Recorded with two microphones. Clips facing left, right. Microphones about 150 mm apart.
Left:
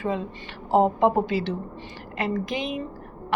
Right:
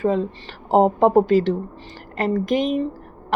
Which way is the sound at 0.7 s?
40° right (ahead or behind).